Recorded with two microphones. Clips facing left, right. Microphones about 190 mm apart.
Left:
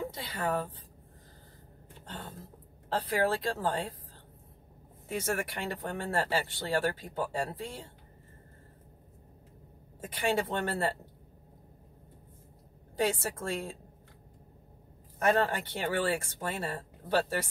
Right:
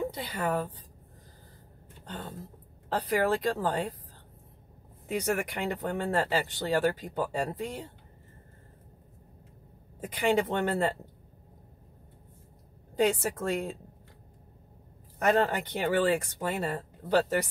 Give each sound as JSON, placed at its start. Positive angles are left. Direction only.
{"t": 0.1, "sound": "speech", "side_deg": -15}
{"t": 2.9, "sound": "speech", "side_deg": -15}
{"t": 5.0, "sound": "speech", "side_deg": -15}
{"t": 9.9, "sound": "speech", "side_deg": -15}
{"t": 12.9, "sound": "speech", "side_deg": -15}
{"t": 15.1, "sound": "speech", "side_deg": -15}